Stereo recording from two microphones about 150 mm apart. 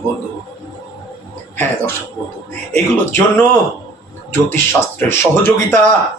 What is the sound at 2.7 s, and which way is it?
Speech, 15° left (ahead or behind).